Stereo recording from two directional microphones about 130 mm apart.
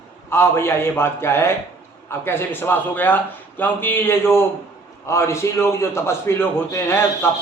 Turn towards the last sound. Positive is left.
turn(degrees=20)  # may be behind; listen again after turning